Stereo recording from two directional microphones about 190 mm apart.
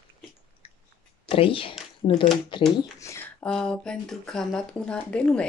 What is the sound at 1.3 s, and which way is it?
Speech, 30° left (ahead or behind).